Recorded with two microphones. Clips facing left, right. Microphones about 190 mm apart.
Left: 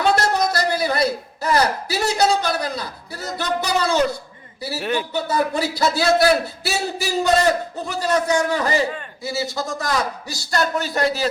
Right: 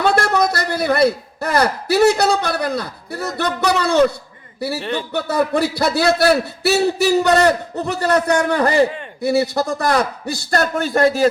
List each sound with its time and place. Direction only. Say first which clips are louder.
0.0 s a man's voice: right 2 dB; 60° right (ahead or behind)
4.8 s speech: left 5 dB; 5° left (ahead or behind)
5.1 s a man's voice: right 6 dB; 60° right (ahead or behind)